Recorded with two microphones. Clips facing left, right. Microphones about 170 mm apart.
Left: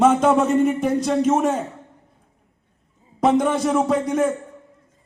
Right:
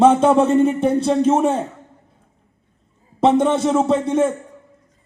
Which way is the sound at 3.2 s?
30° right (ahead or behind).